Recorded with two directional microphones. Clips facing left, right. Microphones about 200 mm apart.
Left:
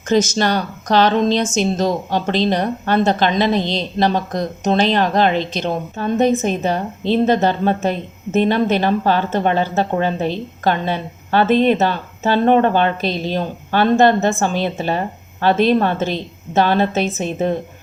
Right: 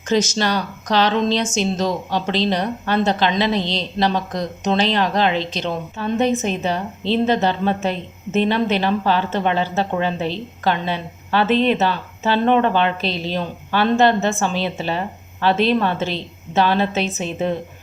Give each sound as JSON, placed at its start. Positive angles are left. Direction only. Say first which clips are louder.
{"t": 0.1, "sound": "a woman's voice", "louder": "left 3 dB", "side_deg": 50}